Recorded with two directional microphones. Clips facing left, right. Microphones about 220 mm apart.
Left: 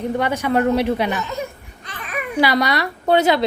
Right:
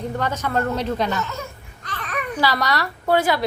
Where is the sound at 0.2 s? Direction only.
15° left (ahead or behind).